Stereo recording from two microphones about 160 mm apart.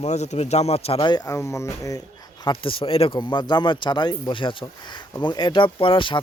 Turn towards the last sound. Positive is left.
turn(degrees=30)  # may be behind; listen again after turning